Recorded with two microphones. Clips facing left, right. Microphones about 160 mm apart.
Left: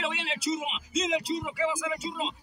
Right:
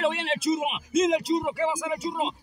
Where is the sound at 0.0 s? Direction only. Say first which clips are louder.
Right 7 dB; 60° right (ahead or behind).